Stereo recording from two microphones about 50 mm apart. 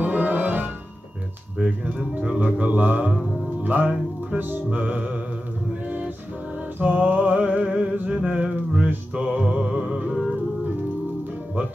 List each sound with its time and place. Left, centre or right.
0.0 s music: right
1.6 s speech: right
3.6 s music: right
4.6 s speech: right
5.9 s music: right
6.8 s speech: right
8.1 s music: right
9.4 s music: centre